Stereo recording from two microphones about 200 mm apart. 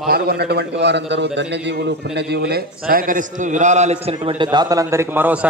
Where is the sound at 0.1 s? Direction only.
55° right (ahead or behind).